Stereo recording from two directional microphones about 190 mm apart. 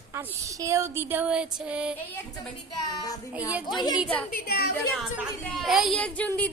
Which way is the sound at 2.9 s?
20° left (ahead or behind).